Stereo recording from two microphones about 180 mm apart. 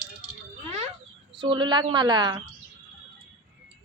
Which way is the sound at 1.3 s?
25° right (ahead or behind).